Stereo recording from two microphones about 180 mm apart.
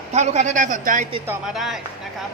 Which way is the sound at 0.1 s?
40° right (ahead or behind).